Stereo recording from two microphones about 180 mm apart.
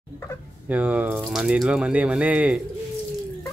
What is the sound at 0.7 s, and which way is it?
Speech, 10° right (ahead or behind).